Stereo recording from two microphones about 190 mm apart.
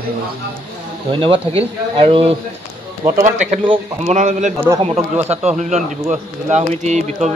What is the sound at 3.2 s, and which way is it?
Speech, 40° right (ahead or behind).